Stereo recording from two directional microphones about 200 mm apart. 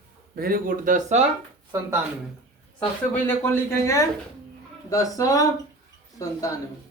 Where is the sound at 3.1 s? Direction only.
10° left (ahead or behind).